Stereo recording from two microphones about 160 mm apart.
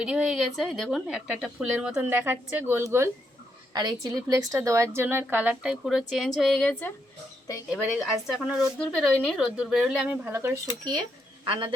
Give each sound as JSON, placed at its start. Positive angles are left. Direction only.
{"t": 0.0, "sound": "a woman's voice", "side_deg": -5}
{"t": 7.7, "sound": "a woman's voice", "side_deg": 0}
{"t": 11.4, "sound": "speech", "side_deg": -30}